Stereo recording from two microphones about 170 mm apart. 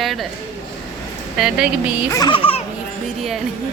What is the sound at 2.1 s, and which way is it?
Baby laughter, 25° left (ahead or behind).